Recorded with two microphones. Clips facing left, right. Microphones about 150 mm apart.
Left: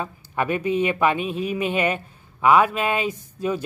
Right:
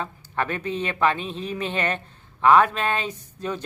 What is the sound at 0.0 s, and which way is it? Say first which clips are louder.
A man's voice: left 2 dB; 10° left (ahead or behind).